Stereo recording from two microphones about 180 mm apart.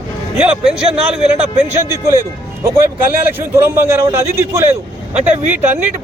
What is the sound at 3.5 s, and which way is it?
Speech, 15° right (ahead or behind).